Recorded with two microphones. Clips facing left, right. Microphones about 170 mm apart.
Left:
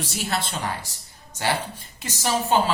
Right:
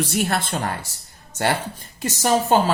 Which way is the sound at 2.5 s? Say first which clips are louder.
Right 2 dB; 45° right (ahead or behind).